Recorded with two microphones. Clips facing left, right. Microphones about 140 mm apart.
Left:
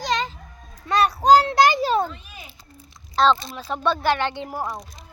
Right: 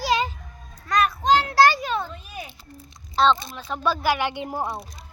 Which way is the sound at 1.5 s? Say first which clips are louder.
Even; 20° left (ahead or behind).